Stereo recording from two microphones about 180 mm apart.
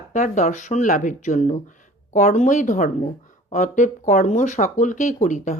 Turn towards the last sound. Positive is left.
turn(degrees=45)  # may be behind; listen again after turning